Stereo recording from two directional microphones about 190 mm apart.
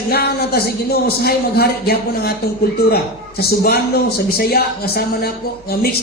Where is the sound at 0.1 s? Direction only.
55° left (ahead or behind).